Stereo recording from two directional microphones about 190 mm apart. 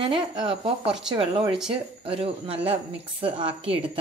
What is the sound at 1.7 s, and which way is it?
A woman's voice, 30° right (ahead or behind).